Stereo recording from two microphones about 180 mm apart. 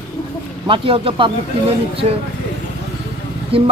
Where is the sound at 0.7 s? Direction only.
30° right (ahead or behind).